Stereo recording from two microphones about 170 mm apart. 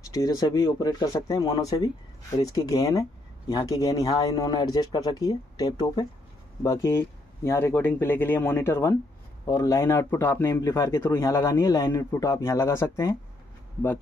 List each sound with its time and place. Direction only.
0.1 s speech: 20° left (ahead or behind)